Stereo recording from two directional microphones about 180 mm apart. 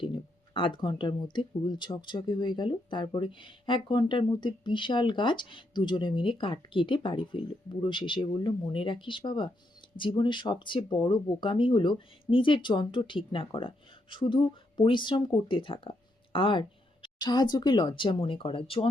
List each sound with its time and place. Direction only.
0.0 s speech: 30° left (ahead or behind)